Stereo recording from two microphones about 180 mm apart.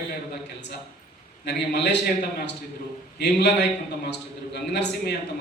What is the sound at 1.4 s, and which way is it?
Speech, 70° left (ahead or behind).